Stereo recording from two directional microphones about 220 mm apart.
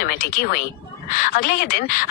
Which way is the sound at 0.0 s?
40° left (ahead or behind).